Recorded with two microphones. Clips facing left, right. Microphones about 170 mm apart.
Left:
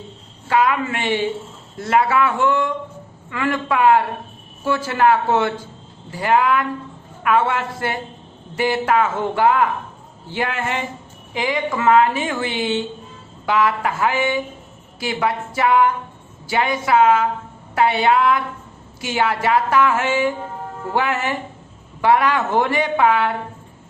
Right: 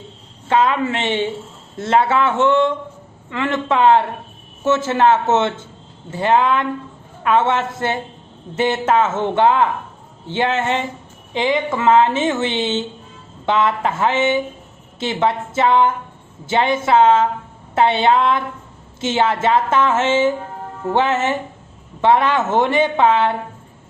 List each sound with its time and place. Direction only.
0.4 s speech: 25° right (ahead or behind)